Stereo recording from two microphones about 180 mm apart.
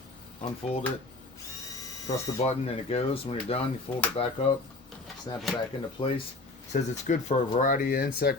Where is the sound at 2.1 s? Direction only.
35° left (ahead or behind).